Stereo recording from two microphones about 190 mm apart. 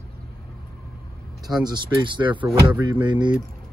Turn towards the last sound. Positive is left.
turn(degrees=-25)  # may be behind; listen again after turning